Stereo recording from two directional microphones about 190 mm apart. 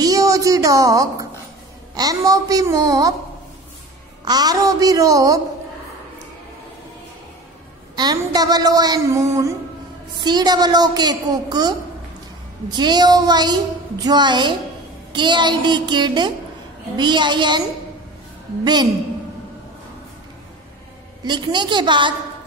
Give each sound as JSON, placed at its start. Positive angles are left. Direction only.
{"t": 0.0, "sound": "a woman's voice", "side_deg": -20}
{"t": 4.2, "sound": "a woman's voice", "side_deg": -20}
{"t": 7.9, "sound": "a woman's voice", "side_deg": -20}
{"t": 21.2, "sound": "a woman's voice", "side_deg": -25}